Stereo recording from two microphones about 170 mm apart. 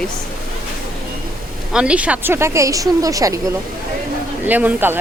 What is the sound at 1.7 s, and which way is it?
Speech, 5° right (ahead or behind).